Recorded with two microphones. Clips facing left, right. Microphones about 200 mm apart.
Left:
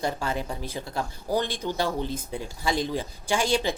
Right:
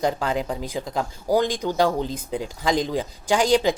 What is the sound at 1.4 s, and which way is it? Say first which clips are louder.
Speech: right 6 dB; 15° right (ahead or behind).